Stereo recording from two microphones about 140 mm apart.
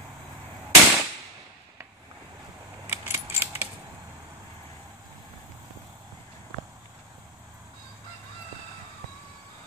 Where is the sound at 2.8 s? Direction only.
10° right (ahead or behind).